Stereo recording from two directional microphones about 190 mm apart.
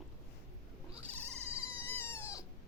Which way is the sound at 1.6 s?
10° left (ahead or behind).